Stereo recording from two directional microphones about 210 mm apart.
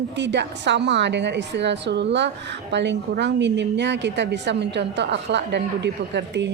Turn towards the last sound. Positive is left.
turn(degrees=-55)  # may be behind; listen again after turning